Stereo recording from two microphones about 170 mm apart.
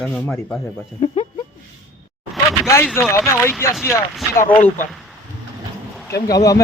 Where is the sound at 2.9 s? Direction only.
15° left (ahead or behind).